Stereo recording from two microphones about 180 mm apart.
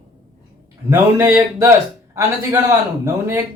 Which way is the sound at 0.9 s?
15° right (ahead or behind).